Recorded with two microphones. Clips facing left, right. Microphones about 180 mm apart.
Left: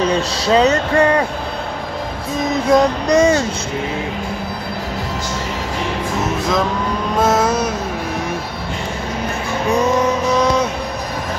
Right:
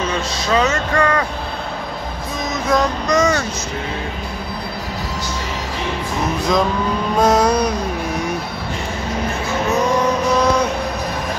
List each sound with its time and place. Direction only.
0.0 s speech: 35° left (ahead or behind)
2.7 s child singing: 30° left (ahead or behind)
7.2 s music: 5° left (ahead or behind)